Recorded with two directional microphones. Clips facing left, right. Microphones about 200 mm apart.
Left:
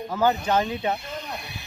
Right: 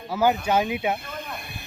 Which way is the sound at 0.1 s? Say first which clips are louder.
Right 1 dB; 10° right (ahead or behind).